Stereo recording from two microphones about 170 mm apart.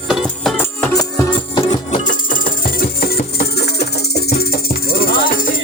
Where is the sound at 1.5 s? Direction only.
30° left (ahead or behind).